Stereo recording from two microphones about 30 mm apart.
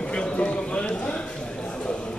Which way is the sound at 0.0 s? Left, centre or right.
Left.